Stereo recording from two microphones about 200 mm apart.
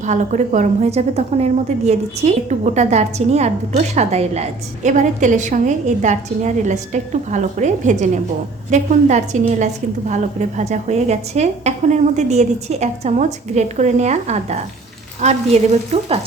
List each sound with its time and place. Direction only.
0.0 s a woman's voice: 35° right (ahead or behind)